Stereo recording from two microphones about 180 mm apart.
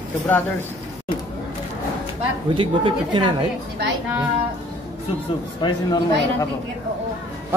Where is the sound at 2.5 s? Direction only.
30° right (ahead or behind).